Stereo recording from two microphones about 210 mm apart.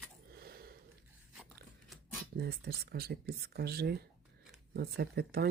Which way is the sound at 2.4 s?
50° right (ahead or behind).